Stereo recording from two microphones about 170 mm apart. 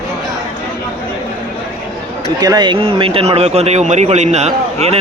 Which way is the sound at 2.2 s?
25° right (ahead or behind).